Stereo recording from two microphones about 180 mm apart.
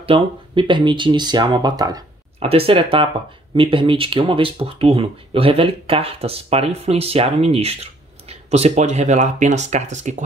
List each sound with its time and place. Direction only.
0.0 s speech: 30° right (ahead or behind)
2.4 s speech: 30° right (ahead or behind)